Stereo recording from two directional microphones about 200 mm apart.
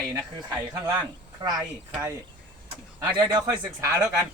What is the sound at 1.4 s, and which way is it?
Speech, 20° right (ahead or behind).